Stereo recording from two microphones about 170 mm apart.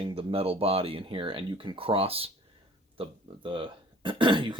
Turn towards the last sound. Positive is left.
turn(degrees=-30)  # may be behind; listen again after turning